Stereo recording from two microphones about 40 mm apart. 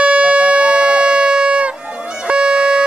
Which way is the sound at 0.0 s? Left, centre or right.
Right.